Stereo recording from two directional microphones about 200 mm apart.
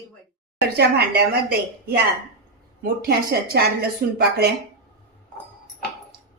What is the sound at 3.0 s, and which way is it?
A woman's voice, 50° right (ahead or behind).